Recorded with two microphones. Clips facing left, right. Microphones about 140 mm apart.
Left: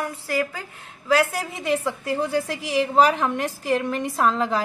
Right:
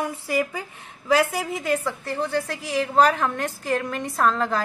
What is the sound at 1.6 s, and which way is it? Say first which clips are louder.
A woman's voice: left 4 dB; 5° left (ahead or behind).